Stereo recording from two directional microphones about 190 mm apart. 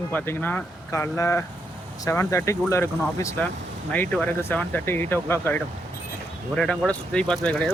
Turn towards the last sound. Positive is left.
turn(degrees=5)  # may be behind; listen again after turning